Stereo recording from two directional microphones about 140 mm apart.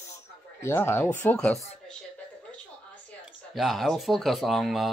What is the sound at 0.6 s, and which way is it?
Speech, 15° left (ahead or behind).